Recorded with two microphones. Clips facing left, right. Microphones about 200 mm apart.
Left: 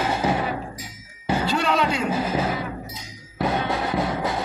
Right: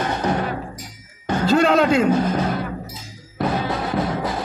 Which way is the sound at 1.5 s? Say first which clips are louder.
Right 10 dB; 50° right (ahead or behind).